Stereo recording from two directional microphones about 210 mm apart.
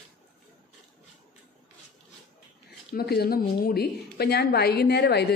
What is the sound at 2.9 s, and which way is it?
A woman's voice, 45° left (ahead or behind).